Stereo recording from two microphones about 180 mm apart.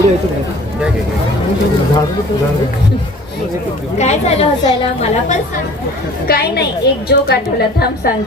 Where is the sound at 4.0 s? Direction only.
40° left (ahead or behind).